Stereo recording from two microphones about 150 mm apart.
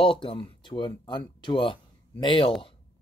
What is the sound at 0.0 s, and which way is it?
Speech, 35° left (ahead or behind).